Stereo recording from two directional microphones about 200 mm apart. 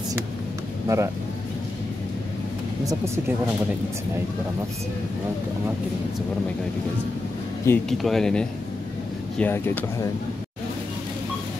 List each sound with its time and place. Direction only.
0.8 s speech: 15° right (ahead or behind)
2.8 s speech: 15° right (ahead or behind)
7.7 s speech: 15° left (ahead or behind)
8.0 s speech: centre (ahead or behind)